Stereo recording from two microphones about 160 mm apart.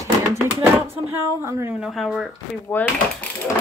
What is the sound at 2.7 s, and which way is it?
Speech, 10° left (ahead or behind).